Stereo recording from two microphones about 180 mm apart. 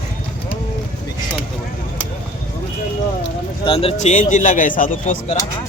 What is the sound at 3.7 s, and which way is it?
Speech, 30° left (ahead or behind).